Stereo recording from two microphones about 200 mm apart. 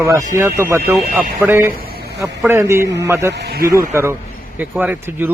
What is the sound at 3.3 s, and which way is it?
Speech, 50° right (ahead or behind).